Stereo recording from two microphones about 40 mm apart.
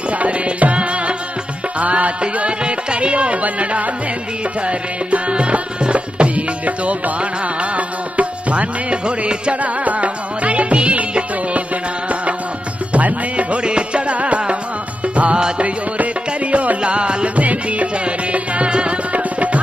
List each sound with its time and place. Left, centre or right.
0.2 s music: right
12.9 s music: right
13.6 s music: right
17.4 s music: right
19.1 s tabla: right